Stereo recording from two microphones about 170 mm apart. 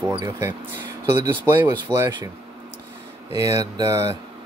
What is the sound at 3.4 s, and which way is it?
Speech, 20° right (ahead or behind).